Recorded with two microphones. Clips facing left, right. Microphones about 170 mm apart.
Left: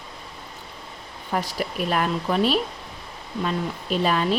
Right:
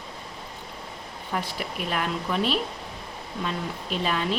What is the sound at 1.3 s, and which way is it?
A woman's voice, 40° left (ahead or behind).